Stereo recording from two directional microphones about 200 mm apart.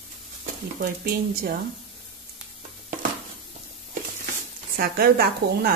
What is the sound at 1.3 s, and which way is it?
Speech, 50° right (ahead or behind).